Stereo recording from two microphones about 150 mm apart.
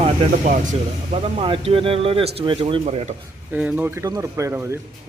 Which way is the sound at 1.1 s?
40° right (ahead or behind).